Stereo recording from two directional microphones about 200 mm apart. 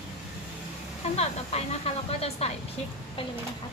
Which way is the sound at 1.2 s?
30° left (ahead or behind).